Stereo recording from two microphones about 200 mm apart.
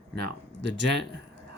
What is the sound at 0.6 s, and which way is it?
Speech, 60° right (ahead or behind).